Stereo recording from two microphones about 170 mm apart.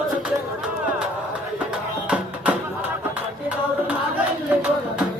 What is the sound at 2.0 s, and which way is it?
Music, 10° right (ahead or behind).